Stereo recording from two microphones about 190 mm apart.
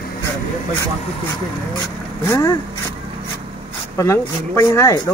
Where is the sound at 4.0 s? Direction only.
15° left (ahead or behind).